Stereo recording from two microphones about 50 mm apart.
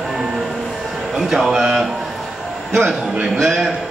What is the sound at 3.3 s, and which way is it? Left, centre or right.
Speech, centre.